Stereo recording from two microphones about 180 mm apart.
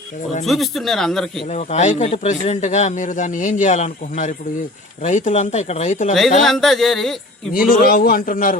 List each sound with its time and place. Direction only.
0.4 s speech: centre (ahead or behind)
1.5 s a man's voice: 40° left (ahead or behind)
6.4 s speech: centre (ahead or behind)
7.5 s a man's voice: 50° left (ahead or behind)